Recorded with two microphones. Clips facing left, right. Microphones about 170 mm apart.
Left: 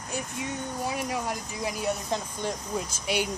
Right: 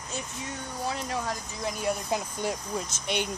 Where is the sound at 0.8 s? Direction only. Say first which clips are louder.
Even; 15° left (ahead or behind).